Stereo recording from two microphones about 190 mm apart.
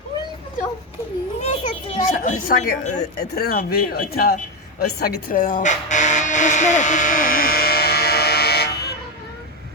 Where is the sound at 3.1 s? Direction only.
55° left (ahead or behind).